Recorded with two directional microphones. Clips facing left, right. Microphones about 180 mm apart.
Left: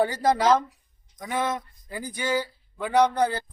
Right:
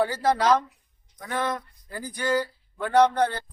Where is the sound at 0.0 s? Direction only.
15° left (ahead or behind).